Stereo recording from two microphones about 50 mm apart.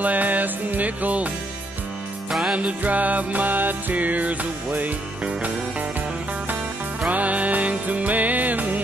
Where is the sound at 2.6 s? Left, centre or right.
Right.